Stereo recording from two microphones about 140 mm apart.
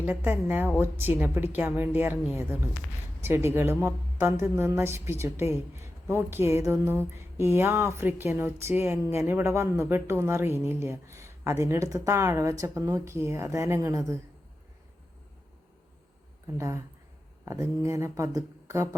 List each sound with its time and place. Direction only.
0.0 s a woman's voice: 15° right (ahead or behind)
16.6 s a woman's voice: 20° right (ahead or behind)